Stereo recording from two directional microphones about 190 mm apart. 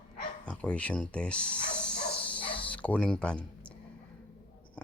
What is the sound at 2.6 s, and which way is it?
Speech, 5° left (ahead or behind).